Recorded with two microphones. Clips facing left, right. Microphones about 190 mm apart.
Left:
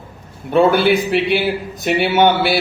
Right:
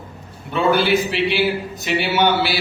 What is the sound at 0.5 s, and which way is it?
A man's voice, 55° left (ahead or behind).